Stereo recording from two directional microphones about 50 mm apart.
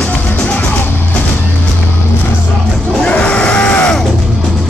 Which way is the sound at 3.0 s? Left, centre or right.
Left.